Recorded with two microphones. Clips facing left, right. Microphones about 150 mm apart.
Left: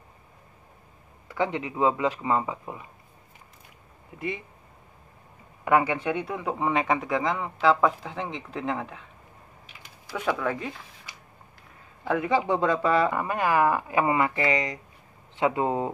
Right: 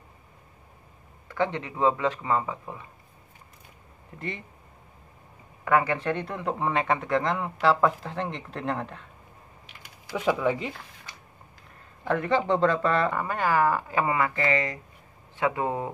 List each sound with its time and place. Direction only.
1.3 s speech: 10° left (ahead or behind)
4.1 s speech: 10° left (ahead or behind)
5.7 s speech: 15° left (ahead or behind)
10.1 s speech: 15° right (ahead or behind)
12.0 s speech: 10° left (ahead or behind)